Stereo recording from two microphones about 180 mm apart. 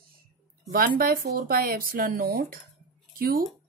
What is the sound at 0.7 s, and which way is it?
Speech, 55° right (ahead or behind).